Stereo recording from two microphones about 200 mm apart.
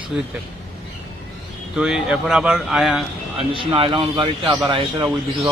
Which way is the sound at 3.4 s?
25° right (ahead or behind).